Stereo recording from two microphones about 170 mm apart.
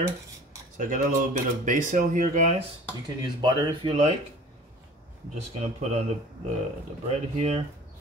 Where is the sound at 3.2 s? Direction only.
25° right (ahead or behind).